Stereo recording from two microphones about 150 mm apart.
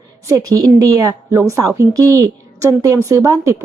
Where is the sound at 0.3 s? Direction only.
25° right (ahead or behind).